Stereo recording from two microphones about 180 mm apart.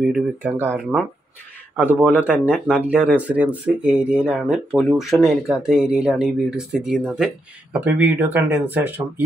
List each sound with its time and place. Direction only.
0.0 s speech: 5° right (ahead or behind)